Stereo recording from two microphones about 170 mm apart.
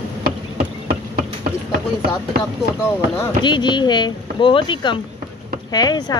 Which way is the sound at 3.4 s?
25° left (ahead or behind).